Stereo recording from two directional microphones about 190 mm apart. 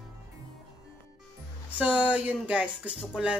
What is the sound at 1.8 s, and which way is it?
Speech, 5° right (ahead or behind).